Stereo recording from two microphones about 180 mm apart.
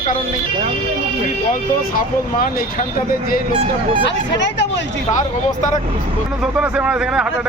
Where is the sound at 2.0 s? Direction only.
50° left (ahead or behind).